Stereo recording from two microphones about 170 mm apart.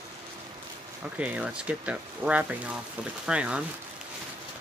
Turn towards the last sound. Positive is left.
turn(degrees=-5)  # may be behind; listen again after turning